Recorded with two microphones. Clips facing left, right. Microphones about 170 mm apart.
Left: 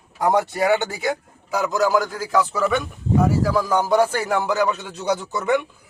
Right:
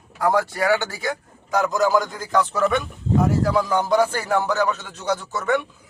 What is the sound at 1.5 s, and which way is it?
A man's voice, 5° left (ahead or behind).